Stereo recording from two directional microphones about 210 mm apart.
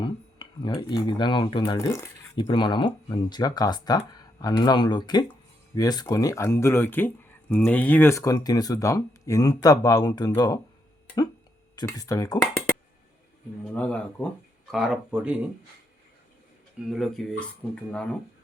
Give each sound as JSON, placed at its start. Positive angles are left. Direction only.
{"t": 0.0, "sound": "speech", "side_deg": 20}
{"t": 11.8, "sound": "speech", "side_deg": 15}
{"t": 13.7, "sound": "speech", "side_deg": 5}
{"t": 16.8, "sound": "speech", "side_deg": 0}